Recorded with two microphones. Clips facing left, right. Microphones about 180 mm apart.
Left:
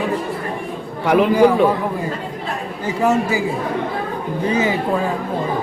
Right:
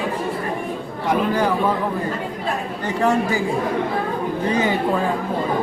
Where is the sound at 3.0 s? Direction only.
5° left (ahead or behind).